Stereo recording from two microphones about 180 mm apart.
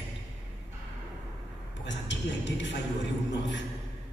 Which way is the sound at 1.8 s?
85° left.